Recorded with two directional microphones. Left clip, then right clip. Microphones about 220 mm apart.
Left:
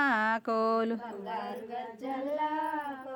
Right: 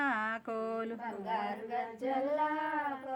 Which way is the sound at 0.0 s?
45° left (ahead or behind).